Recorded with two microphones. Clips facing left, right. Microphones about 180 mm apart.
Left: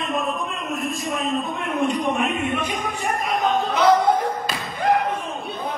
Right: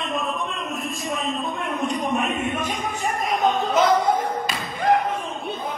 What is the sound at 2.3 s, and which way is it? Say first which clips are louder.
Music: left 1 dB; 45° right (ahead or behind).